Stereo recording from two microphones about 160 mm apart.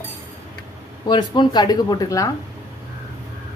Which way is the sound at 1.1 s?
30° left (ahead or behind).